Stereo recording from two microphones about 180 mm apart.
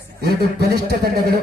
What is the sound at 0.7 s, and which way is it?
Speech, 60° right (ahead or behind).